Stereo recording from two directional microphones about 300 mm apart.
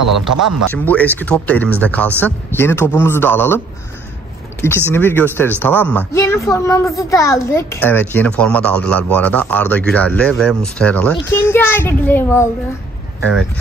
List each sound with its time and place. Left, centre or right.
0.3 s speech: right
0.8 s a child's voice: centre